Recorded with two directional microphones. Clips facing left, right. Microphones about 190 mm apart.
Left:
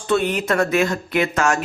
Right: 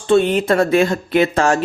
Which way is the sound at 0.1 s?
25° right (ahead or behind).